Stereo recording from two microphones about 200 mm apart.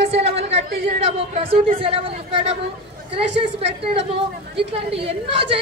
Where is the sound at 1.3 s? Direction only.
40° right (ahead or behind).